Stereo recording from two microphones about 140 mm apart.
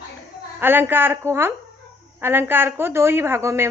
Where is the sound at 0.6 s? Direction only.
15° right (ahead or behind).